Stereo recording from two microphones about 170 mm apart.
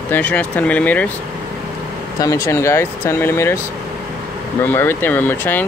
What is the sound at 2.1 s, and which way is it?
Speech, 20° left (ahead or behind).